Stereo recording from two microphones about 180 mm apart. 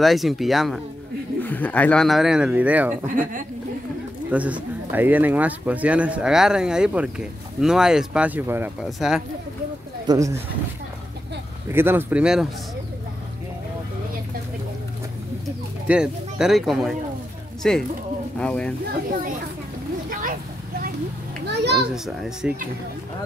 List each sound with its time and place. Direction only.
0.0 s speech: centre (ahead or behind)
4.3 s speech: 10° right (ahead or behind)
10.0 s speech: 20° right (ahead or behind)
11.7 s speech: 10° right (ahead or behind)
15.9 s speech: 5° right (ahead or behind)
20.1 s a sound: 50° right (ahead or behind)
21.5 s a sound: 65° right (ahead or behind)
21.8 s speech: centre (ahead or behind)